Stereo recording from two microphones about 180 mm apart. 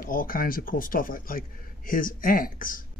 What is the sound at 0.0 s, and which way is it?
Speech, 50° left (ahead or behind).